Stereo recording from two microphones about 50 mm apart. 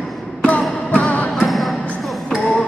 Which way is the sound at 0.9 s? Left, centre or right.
Left.